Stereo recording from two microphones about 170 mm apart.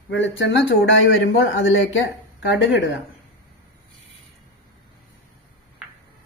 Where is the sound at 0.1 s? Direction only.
90° left.